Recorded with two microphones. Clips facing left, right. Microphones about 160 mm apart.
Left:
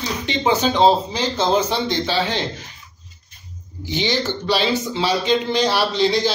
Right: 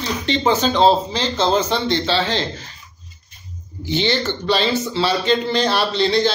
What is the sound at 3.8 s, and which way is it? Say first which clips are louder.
Speech: right 2 dB; 15° left (ahead or behind).